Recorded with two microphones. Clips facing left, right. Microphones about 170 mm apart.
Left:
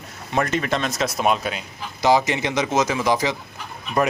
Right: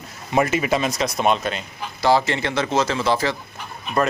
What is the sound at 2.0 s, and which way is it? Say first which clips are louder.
Speech: even; 15° left (ahead or behind).